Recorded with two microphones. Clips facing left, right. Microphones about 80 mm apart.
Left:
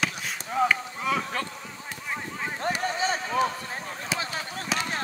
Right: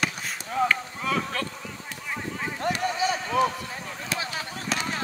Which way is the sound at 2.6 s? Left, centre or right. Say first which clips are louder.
Right 2 dB; left.